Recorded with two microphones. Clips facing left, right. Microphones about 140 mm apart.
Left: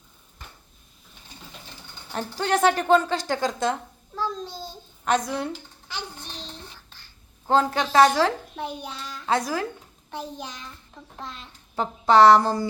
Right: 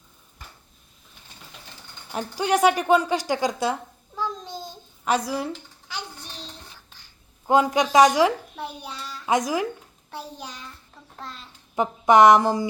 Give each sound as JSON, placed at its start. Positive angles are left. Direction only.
{"t": 2.1, "sound": "a child's voice", "side_deg": -10}
{"t": 4.2, "sound": "a child's voice", "side_deg": -20}
{"t": 5.0, "sound": "a child's voice", "side_deg": -5}
{"t": 7.4, "sound": "a child's voice", "side_deg": -10}
{"t": 11.7, "sound": "a child's voice", "side_deg": -15}